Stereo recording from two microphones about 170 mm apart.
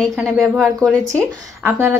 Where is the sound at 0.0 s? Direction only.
Centre (ahead or behind).